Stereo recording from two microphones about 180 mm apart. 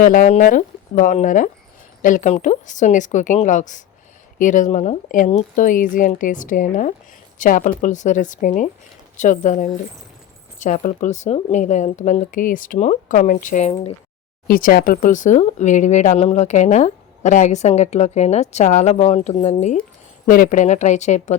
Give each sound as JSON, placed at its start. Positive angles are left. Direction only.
{"t": 0.0, "sound": "speech", "side_deg": 45}
{"t": 14.4, "sound": "speech", "side_deg": 55}
{"t": 20.2, "sound": "speech", "side_deg": 50}